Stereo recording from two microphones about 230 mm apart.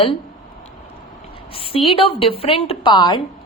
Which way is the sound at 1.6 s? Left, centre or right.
Left.